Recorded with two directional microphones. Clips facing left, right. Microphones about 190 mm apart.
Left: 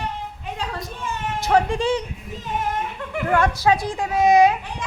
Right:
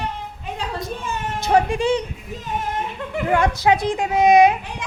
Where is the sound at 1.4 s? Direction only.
15° right (ahead or behind).